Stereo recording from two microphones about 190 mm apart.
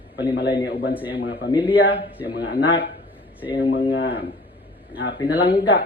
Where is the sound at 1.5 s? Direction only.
25° left (ahead or behind).